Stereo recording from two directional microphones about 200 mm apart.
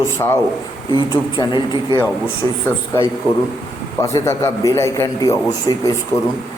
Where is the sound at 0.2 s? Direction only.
15° left (ahead or behind).